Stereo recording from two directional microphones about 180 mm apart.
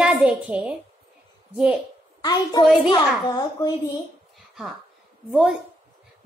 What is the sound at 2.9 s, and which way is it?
A child's voice, 25° left (ahead or behind).